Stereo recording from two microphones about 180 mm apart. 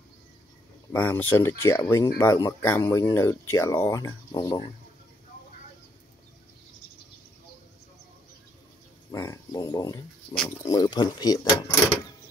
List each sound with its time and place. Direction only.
0.9 s speech: 10° left (ahead or behind)
9.1 s a sound: 15° left (ahead or behind)
10.4 s speech: 20° left (ahead or behind)